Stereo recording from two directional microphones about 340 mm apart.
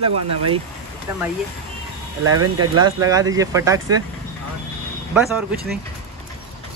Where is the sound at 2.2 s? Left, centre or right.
Right.